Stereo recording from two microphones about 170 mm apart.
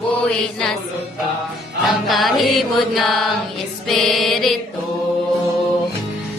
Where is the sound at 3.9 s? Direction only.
Centre (ahead or behind).